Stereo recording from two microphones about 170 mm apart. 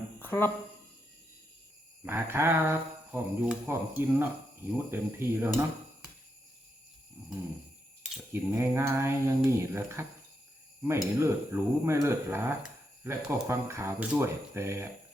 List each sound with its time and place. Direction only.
0.2 s a sound: 10° left (ahead or behind)
2.0 s speech: 15° right (ahead or behind)
8.3 s speech: 15° right (ahead or behind)